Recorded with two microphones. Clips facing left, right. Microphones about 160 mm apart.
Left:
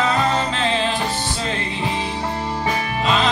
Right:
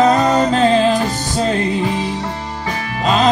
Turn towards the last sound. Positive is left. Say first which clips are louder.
# right 4 dB
turn(degrees=-40)  # may be behind; listen again after turning